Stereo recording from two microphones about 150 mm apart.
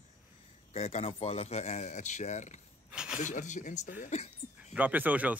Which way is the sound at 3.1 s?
55° left (ahead or behind).